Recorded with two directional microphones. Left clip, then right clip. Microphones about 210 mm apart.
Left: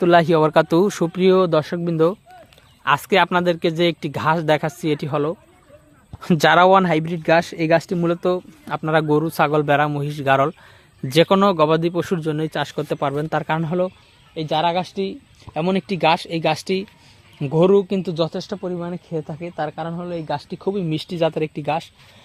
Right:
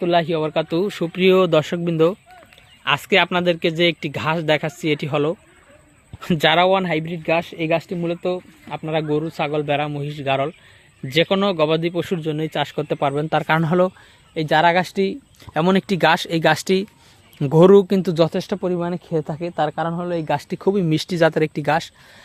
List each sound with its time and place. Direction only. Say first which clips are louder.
0.0 s speech: left 4 dB; 30° left (ahead or behind)
1.1 s speech: right 2 dB; centre (ahead or behind)
6.2 s speech: left 2 dB; 15° left (ahead or behind); by 18.1 s 25° right (ahead or behind)
18.1 s speech: right 4 dB; 35° right (ahead or behind)